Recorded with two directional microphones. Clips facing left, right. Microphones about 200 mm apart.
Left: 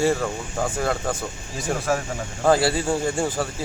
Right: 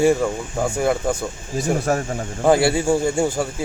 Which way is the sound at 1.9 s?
45° right (ahead or behind).